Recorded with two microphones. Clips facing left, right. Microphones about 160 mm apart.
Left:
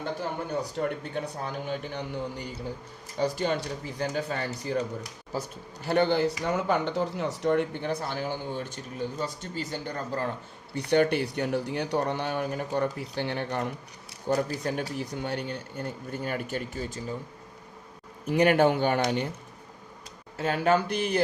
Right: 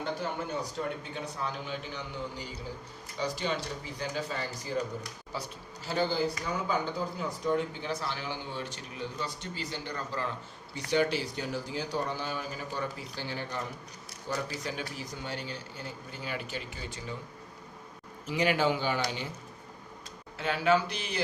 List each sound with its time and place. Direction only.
0.8 s a man's voice: 55° left (ahead or behind)
3.2 s a man's voice: 55° left (ahead or behind)
18.3 s speech: 55° left (ahead or behind)
20.4 s a man's voice: 45° left (ahead or behind)